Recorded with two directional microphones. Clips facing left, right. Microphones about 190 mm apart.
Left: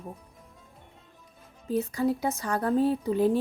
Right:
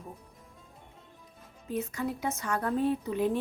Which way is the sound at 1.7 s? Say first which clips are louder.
Left 6 dB; 35° left (ahead or behind).